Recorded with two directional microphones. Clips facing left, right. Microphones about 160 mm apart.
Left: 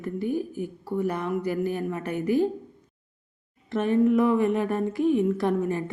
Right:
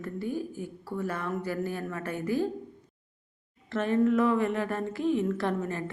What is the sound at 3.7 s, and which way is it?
Speech, 15° left (ahead or behind).